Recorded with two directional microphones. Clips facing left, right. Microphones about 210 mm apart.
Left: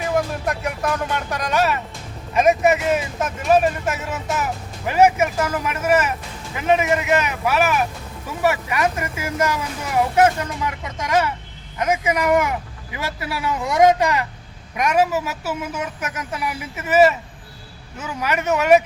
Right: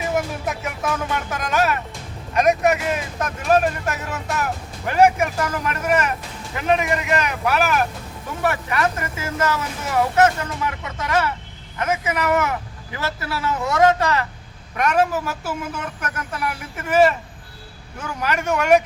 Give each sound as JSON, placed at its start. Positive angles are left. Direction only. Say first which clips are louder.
{"t": 0.0, "sound": "speech", "louder": "left 2 dB", "side_deg": 0}